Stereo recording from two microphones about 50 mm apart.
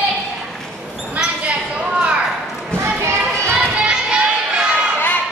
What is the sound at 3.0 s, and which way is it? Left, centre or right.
Children playing, right.